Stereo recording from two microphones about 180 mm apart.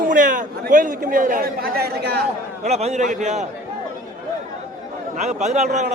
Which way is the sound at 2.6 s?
35° right (ahead or behind).